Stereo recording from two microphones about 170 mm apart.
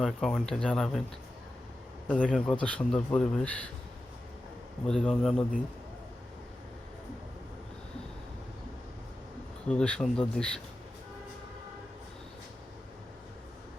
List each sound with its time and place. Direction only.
0.0 s speech: centre (ahead or behind)
2.0 s speech: 10° left (ahead or behind)
4.9 s speech: centre (ahead or behind)
9.6 s speech: 5° left (ahead or behind)